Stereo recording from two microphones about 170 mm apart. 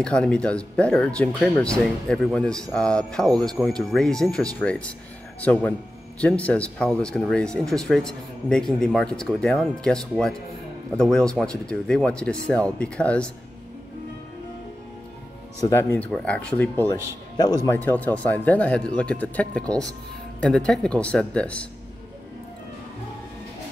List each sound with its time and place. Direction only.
0.0 s speech: 5° left (ahead or behind)
15.6 s speech: 15° left (ahead or behind)